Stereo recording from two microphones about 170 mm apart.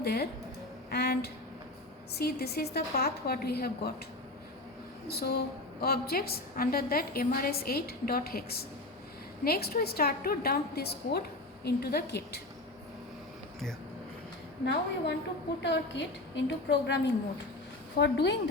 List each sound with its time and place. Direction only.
0.0 s speech: 75° left (ahead or behind)
0.9 s a sound: 70° left (ahead or behind)
2.1 s a woman's voice: 70° left (ahead or behind)
5.0 s a woman's voice: 70° left (ahead or behind)
14.6 s a woman's voice: 90° left